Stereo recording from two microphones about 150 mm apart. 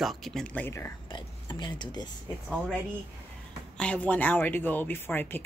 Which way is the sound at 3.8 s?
10° left (ahead or behind).